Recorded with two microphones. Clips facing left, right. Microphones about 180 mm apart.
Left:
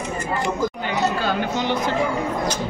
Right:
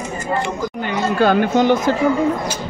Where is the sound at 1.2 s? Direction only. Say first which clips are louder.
Right 9 dB; 50° right (ahead or behind).